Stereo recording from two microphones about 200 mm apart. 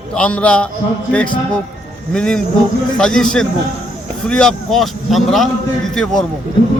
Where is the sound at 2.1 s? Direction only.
5° left (ahead or behind).